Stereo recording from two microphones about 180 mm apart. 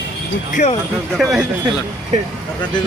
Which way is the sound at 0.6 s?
40° left (ahead or behind).